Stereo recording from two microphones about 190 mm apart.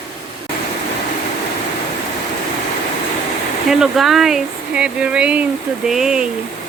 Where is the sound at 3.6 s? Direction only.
Centre (ahead or behind).